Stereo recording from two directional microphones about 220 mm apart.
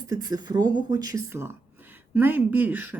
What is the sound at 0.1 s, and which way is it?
A woman's voice, 15° right (ahead or behind).